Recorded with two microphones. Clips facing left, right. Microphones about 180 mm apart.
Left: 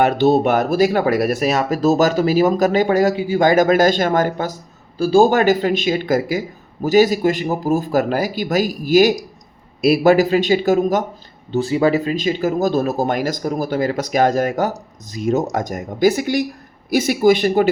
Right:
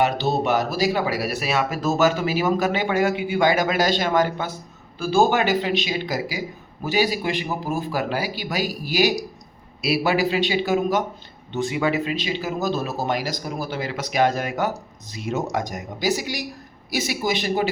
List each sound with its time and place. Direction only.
0.0 s speech: 55° left (ahead or behind)